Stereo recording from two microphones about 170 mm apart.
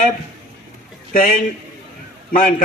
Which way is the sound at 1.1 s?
50° left (ahead or behind).